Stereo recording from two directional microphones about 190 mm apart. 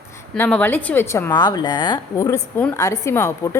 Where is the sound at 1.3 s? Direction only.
20° left (ahead or behind).